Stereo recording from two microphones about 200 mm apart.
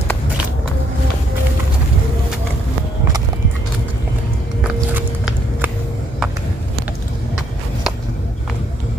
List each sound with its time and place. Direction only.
4.9 s walk: 10° right (ahead or behind)